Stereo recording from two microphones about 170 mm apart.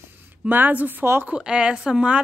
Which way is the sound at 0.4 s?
10° right (ahead or behind).